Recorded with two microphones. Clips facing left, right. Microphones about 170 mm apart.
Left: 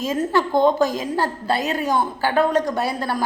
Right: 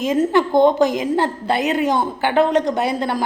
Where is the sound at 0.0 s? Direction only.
20° right (ahead or behind).